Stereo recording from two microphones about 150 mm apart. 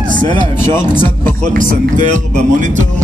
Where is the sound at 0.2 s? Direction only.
30° left (ahead or behind).